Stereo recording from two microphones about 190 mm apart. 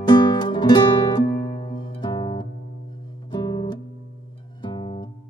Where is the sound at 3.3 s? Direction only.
25° left (ahead or behind).